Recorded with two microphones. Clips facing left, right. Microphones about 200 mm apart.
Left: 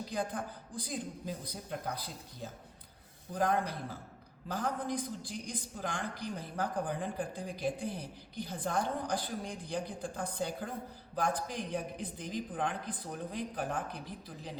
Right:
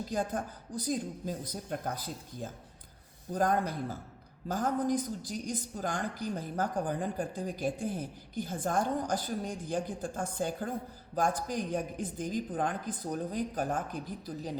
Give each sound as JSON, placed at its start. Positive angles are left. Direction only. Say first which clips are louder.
{"t": 0.1, "sound": "a man's voice", "louder": "right 3 dB", "side_deg": -45}